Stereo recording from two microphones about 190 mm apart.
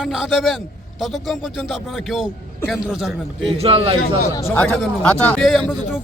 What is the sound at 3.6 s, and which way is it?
Speech, 30° right (ahead or behind).